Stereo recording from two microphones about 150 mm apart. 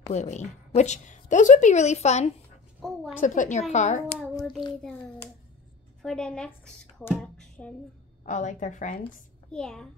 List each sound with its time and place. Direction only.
0.1 s a woman's voice: 50° left (ahead or behind)
2.8 s a sound: centre (ahead or behind)
3.2 s a woman's voice: 55° left (ahead or behind)
4.2 s child singing: centre (ahead or behind)
6.0 s a woman's voice: 5° left (ahead or behind)
8.3 s a woman's voice: 55° left (ahead or behind)
9.5 s a woman's voice: 5° left (ahead or behind)